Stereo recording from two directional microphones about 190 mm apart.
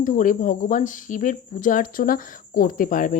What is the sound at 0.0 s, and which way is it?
Speech, 45° left (ahead or behind).